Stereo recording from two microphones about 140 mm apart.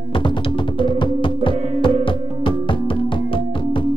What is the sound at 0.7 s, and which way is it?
Music, 35° left (ahead or behind).